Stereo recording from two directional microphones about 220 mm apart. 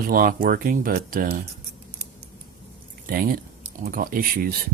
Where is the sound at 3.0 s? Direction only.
40° right (ahead or behind).